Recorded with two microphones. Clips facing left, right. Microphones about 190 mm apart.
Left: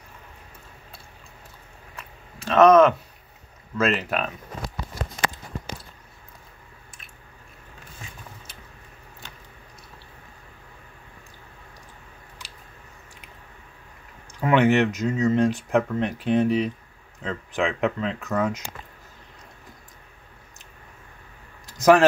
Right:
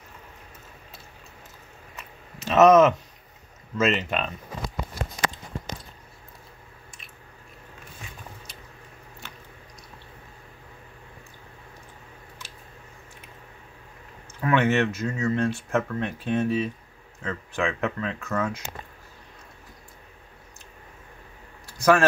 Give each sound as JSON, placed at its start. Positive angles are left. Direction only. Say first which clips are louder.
{"t": 2.4, "sound": "speech", "louder": "left 1 dB", "side_deg": -5}
{"t": 14.4, "sound": "speech", "louder": "left 3 dB", "side_deg": 15}
{"t": 21.6, "sound": "a sound", "louder": "left 4 dB", "side_deg": 20}